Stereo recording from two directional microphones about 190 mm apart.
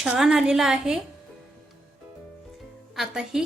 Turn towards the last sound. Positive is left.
turn(degrees=0)  # may be behind; listen again after turning